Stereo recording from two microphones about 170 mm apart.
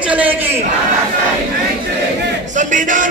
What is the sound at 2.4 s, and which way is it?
Crowd, 45° right (ahead or behind).